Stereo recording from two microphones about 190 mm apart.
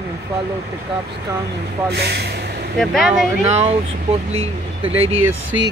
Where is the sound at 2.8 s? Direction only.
Centre (ahead or behind).